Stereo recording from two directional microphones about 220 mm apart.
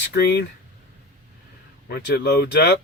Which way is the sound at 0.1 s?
50° left (ahead or behind).